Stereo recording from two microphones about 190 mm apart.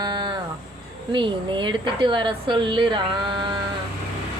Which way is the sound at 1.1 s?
25° right (ahead or behind).